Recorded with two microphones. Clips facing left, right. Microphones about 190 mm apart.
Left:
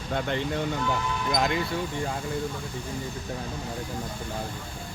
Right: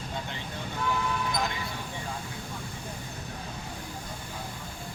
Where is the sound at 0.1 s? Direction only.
65° left (ahead or behind).